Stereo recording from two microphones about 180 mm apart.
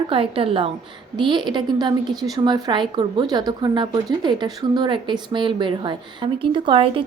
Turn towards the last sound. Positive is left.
turn(degrees=-30)  # may be behind; listen again after turning